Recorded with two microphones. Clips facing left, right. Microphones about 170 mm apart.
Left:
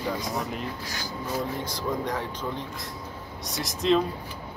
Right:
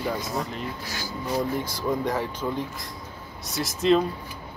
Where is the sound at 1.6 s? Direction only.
10° right (ahead or behind).